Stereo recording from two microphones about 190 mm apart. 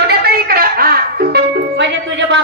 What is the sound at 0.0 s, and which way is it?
Music, 55° right (ahead or behind).